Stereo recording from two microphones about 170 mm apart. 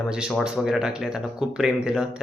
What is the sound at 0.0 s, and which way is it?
Speech, 5° right (ahead or behind).